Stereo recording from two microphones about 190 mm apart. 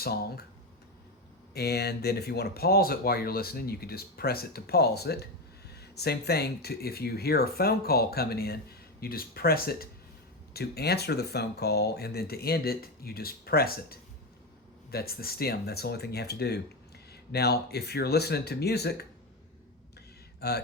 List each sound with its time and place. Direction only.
1.5 s speech: 55° left (ahead or behind)
20.4 s speech: 60° left (ahead or behind)